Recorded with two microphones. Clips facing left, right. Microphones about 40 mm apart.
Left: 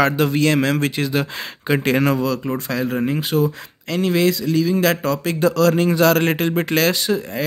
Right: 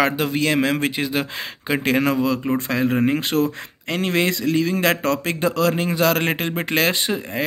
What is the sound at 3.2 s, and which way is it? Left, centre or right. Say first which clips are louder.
Speech: left 1 dB; right.